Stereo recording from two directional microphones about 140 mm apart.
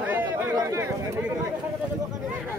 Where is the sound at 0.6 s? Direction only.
20° right (ahead or behind).